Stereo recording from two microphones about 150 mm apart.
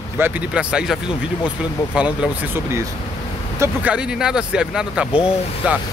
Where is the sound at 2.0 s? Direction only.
10° right (ahead or behind).